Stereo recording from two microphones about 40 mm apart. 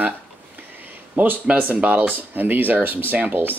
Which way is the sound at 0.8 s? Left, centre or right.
Right.